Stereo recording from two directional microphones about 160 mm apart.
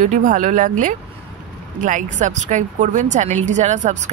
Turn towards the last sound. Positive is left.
turn(degrees=-50)  # may be behind; listen again after turning